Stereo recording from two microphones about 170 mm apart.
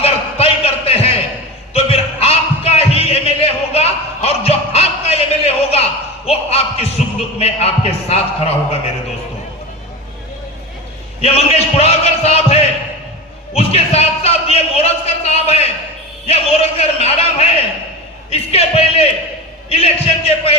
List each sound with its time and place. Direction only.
0.0 s music: 35° left (ahead or behind)
1.7 s a sound: 35° left (ahead or behind)
11.2 s speech: 35° left (ahead or behind)